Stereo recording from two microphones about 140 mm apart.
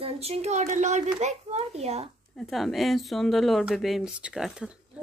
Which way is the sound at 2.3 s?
Centre (ahead or behind).